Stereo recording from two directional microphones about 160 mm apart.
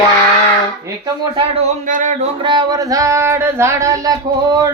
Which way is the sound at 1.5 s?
50° right (ahead or behind).